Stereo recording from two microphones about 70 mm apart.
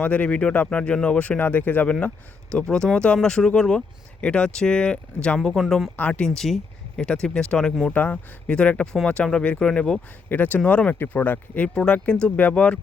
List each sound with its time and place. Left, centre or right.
0.0 s speech: left; by 5.9 s centre
6.0 s speech: centre
10.2 s speech: left